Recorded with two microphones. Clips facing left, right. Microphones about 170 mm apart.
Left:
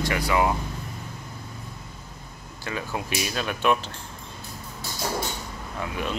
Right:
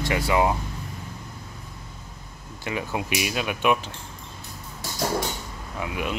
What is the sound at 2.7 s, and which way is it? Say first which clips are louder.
Speech: right 2 dB; 15° right (ahead or behind).